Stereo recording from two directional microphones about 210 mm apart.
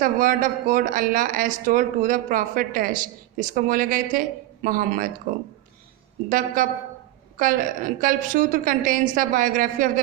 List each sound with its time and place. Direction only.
0.0 s speech: 40° right (ahead or behind)
6.2 s speech: 40° right (ahead or behind)